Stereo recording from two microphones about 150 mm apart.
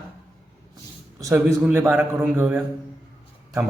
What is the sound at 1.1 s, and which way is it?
A man's voice, 20° right (ahead or behind).